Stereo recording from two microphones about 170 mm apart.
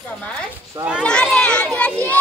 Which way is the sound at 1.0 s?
5° left (ahead or behind).